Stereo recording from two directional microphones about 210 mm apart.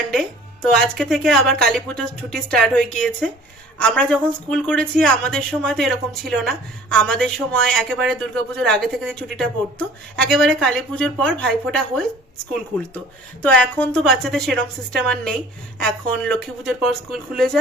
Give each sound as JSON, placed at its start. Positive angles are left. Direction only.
{"t": 0.1, "sound": "speech", "side_deg": 0}
{"t": 13.4, "sound": "speech", "side_deg": 5}